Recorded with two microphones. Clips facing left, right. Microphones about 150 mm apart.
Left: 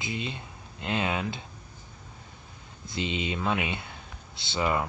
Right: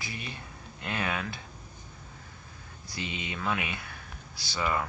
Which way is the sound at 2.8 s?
20° left (ahead or behind).